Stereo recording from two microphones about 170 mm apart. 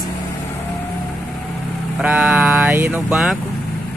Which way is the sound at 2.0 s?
10° right (ahead or behind).